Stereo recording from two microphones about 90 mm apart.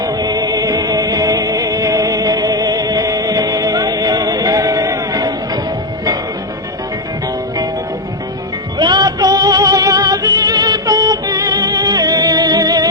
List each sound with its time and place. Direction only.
0.0 s music: 45° right (ahead or behind)
8.8 s music: 50° right (ahead or behind)